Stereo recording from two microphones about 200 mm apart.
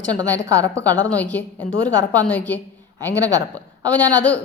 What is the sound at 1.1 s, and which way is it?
A woman's voice, 5° left (ahead or behind).